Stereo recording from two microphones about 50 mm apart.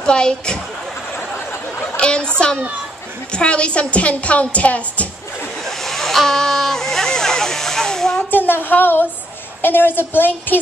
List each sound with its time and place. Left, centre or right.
0.0 s a woman's voice: centre
1.8 s chatter: centre
3.3 s a woman's voice: left
5.9 s a sound: centre
8.3 s a woman's voice: left